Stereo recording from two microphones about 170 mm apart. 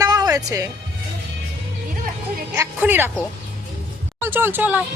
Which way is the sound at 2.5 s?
15° right (ahead or behind).